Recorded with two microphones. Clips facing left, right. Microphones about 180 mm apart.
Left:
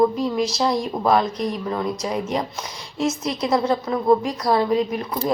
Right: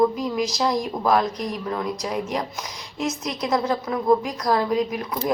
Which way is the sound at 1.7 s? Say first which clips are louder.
Left 2 dB; 5° left (ahead or behind).